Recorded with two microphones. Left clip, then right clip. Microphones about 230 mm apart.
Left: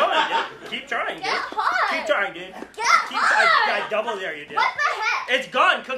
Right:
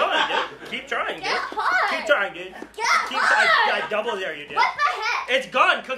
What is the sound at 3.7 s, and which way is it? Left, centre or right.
Speech, right.